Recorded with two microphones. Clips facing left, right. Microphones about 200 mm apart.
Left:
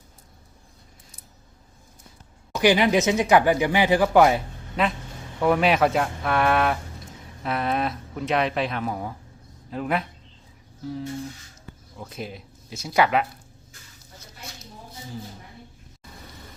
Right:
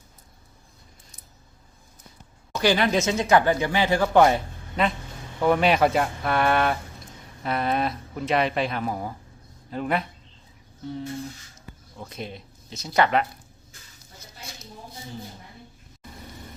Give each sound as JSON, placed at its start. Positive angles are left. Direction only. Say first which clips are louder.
{"t": 2.6, "sound": "speech", "louder": "left 3 dB", "side_deg": 15}
{"t": 11.9, "sound": "speech", "louder": "left 1 dB", "side_deg": 5}